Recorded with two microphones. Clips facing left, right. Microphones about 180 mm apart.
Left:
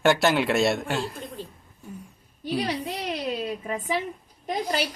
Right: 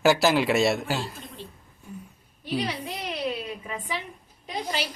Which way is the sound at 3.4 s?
45° left (ahead or behind).